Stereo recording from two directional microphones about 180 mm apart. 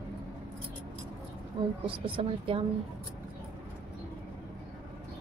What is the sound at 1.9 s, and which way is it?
Speech, 30° right (ahead or behind).